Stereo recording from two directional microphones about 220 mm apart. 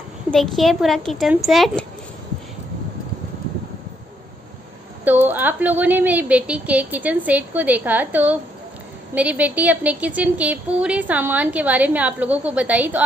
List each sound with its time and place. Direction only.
0.3 s speech: centre (ahead or behind)
5.0 s a woman's voice: 10° right (ahead or behind)